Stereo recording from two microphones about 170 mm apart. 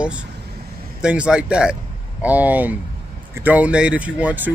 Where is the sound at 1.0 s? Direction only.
5° right (ahead or behind).